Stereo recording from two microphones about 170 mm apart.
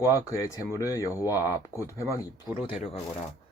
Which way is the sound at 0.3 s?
20° left (ahead or behind).